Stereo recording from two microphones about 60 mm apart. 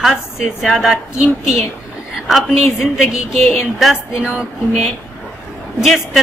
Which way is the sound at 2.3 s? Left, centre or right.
Centre.